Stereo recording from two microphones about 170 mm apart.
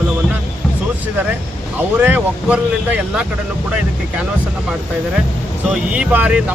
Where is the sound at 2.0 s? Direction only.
10° right (ahead or behind).